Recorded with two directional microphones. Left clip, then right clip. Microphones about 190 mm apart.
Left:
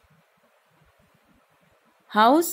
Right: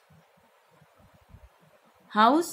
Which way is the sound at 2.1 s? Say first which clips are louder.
Left 3 dB; 55° left (ahead or behind).